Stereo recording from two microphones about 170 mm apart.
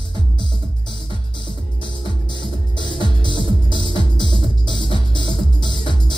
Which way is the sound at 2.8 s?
25° left (ahead or behind).